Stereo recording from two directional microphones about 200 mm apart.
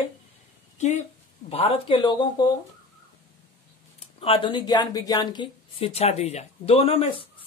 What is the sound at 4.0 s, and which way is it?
Speech, 30° left (ahead or behind).